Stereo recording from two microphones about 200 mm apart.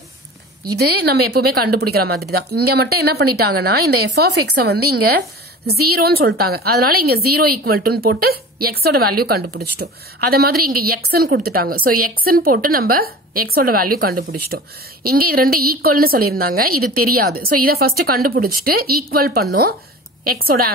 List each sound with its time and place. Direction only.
0.7 s a woman's voice: 50° right (ahead or behind)